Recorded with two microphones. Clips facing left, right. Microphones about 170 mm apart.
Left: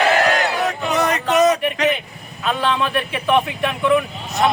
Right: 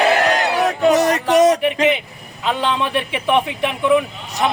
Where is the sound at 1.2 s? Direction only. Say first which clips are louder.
Even; 15° right (ahead or behind).